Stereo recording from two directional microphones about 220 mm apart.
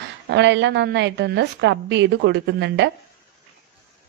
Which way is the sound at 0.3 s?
50° right (ahead or behind).